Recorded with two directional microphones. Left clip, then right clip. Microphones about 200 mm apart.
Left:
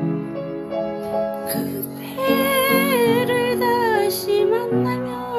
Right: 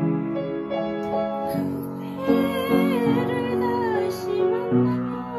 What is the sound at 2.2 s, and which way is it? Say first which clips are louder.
Music: left 5 dB; 50° left (ahead or behind).